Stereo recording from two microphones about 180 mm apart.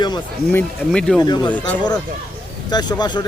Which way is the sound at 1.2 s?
25° left (ahead or behind).